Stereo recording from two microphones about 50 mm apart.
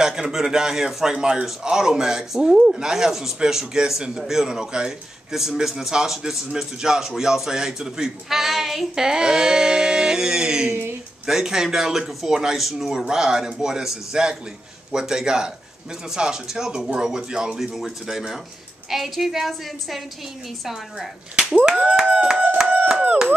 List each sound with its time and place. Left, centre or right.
0.0 s speech: centre
12.3 s a woman's voice: centre
21.5 s a sound: right
21.9 s speech: centre